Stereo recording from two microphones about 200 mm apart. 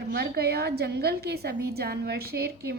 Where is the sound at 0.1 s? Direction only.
55° right (ahead or behind).